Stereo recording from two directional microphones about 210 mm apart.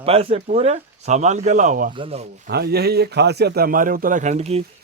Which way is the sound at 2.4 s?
50° right (ahead or behind).